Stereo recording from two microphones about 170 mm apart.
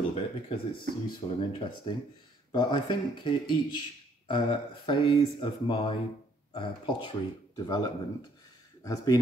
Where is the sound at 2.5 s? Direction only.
25° left (ahead or behind).